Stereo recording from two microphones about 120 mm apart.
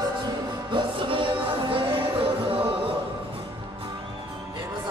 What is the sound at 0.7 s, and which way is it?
Music, 45° right (ahead or behind).